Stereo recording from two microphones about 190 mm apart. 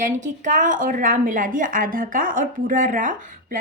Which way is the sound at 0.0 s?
40° right (ahead or behind).